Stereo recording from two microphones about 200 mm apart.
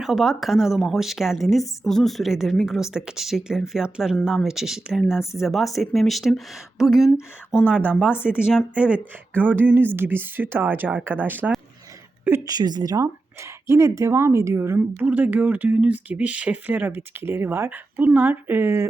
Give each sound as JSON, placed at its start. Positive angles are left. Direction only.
{"t": 0.0, "sound": "a woman's voice", "side_deg": 0}